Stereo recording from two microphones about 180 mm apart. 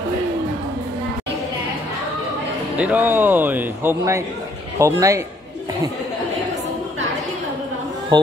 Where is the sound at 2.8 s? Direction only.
10° right (ahead or behind).